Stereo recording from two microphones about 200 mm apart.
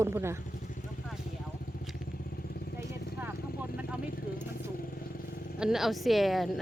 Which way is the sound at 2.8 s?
10° right (ahead or behind).